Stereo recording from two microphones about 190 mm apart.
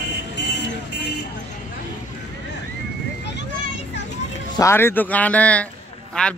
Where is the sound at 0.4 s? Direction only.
60° left (ahead or behind).